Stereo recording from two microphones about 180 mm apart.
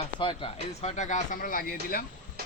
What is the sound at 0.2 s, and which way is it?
Speech, 30° left (ahead or behind).